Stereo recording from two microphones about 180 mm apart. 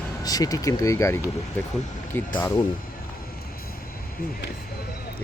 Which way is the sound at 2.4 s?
15° left (ahead or behind).